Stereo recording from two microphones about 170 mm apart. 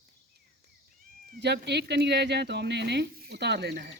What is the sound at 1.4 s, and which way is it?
Speech, 80° right.